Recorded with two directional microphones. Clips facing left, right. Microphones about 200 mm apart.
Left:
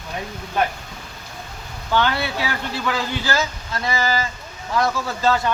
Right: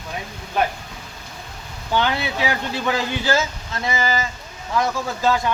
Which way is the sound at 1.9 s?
20° right (ahead or behind).